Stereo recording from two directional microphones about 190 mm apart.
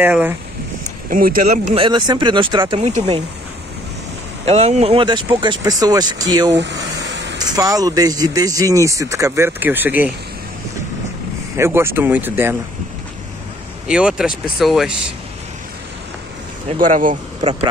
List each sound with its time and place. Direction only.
0.0 s speech: 10° right (ahead or behind)
1.1 s speech: 45° right (ahead or behind); by 3.2 s 25° right (ahead or behind)
4.5 s speech: 35° right (ahead or behind)
6.5 s a sound: 65° right (ahead or behind)
7.3 s speech: 20° right (ahead or behind)
11.5 s speech: 15° right (ahead or behind)
13.8 s speech: 5° right (ahead or behind)
16.7 s speech: 45° right (ahead or behind)
17.4 s speech: 30° right (ahead or behind)